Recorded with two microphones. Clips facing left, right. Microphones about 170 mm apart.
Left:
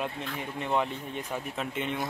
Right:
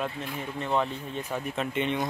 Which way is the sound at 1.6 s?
5° left (ahead or behind).